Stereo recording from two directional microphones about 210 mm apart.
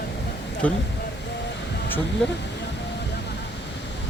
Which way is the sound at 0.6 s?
5° left (ahead or behind).